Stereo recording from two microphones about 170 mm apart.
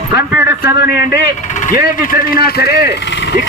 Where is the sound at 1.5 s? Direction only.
50° left (ahead or behind); by 2.7 s 65° left (ahead or behind).